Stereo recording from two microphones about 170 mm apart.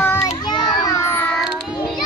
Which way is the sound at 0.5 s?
25° left (ahead or behind).